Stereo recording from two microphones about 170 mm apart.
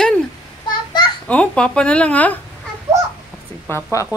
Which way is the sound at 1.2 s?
5° left (ahead or behind).